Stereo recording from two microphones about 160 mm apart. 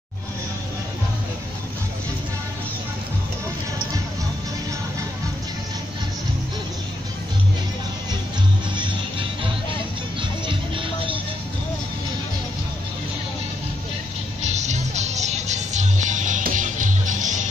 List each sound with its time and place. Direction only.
8.7 s music: 30° right (ahead or behind)
14.5 s music: 45° right (ahead or behind)